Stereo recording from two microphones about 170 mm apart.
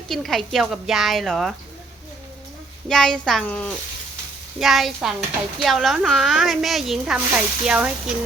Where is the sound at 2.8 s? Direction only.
5° left (ahead or behind).